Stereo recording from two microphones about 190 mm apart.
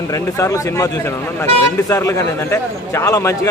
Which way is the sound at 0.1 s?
15° left (ahead or behind).